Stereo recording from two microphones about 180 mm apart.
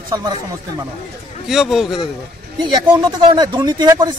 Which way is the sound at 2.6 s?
25° right (ahead or behind).